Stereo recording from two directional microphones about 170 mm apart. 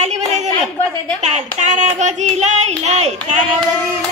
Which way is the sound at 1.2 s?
45° right (ahead or behind).